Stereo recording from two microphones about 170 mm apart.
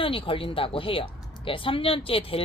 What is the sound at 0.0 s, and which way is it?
Speech, 30° left (ahead or behind).